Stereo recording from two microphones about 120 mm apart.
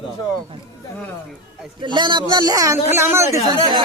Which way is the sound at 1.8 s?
40° right (ahead or behind).